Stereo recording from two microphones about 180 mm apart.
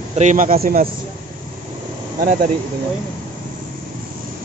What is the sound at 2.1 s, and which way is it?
Speech, 45° right (ahead or behind).